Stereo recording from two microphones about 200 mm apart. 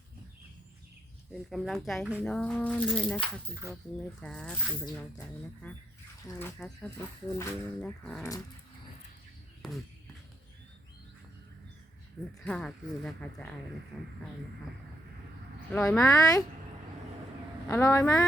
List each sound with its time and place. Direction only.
1.3 s speech: centre (ahead or behind)
3.5 s speech: 15° right (ahead or behind)
4.2 s speech: 5° left (ahead or behind)
12.4 s speech: centre (ahead or behind)
15.7 s speech: 5° left (ahead or behind)
16.0 s speech: 15° left (ahead or behind)
17.7 s speech: 15° left (ahead or behind)